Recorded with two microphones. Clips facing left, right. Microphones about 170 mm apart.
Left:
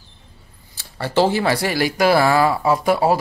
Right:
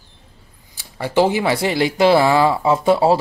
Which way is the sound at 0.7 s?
15° right (ahead or behind).